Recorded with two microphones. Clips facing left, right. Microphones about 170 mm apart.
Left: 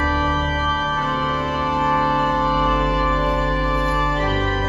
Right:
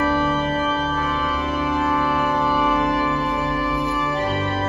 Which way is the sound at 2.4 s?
10° right (ahead or behind).